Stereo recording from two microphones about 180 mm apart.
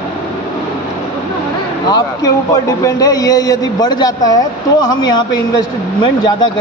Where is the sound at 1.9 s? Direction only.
20° left (ahead or behind).